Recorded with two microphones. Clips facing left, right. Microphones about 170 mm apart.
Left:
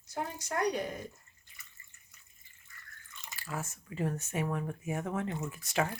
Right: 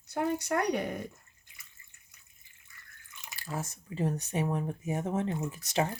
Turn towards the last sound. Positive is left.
turn(degrees=-20)  # may be behind; listen again after turning